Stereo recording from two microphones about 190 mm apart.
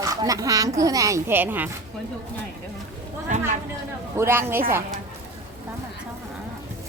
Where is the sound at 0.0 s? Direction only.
20° right (ahead or behind).